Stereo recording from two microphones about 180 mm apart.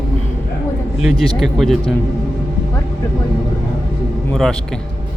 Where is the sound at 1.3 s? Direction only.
Centre (ahead or behind).